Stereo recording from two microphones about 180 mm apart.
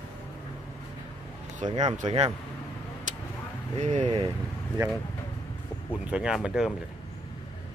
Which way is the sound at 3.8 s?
40° right (ahead or behind).